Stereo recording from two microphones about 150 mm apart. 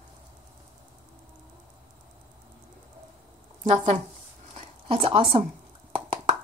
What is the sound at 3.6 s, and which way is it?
Speech, 35° right (ahead or behind).